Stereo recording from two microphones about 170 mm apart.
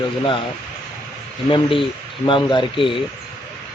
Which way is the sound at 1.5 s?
30° left (ahead or behind).